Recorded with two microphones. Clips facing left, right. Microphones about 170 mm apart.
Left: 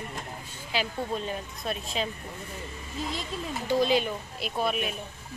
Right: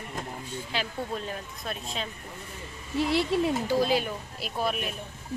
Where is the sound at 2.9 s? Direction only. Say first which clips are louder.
Right 10 dB; 75° right (ahead or behind).